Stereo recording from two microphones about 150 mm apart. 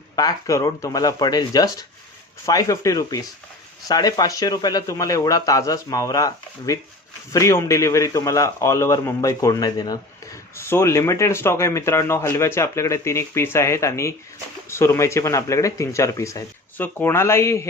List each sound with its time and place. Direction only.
0.2 s speech: 25° left (ahead or behind)